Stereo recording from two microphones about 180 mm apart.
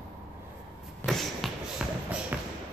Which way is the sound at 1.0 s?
Centre (ahead or behind).